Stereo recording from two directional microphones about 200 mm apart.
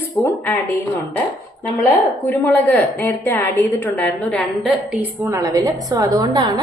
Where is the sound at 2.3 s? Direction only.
10° left (ahead or behind).